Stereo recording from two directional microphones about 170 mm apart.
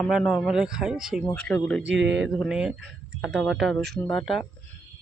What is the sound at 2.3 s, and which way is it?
Speech, 5° right (ahead or behind).